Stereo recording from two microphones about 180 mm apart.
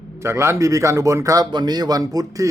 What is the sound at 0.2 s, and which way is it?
A man's voice, 15° right (ahead or behind).